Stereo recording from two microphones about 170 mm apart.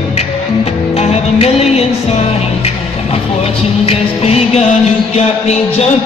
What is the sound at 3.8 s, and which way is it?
Music, 35° left (ahead or behind).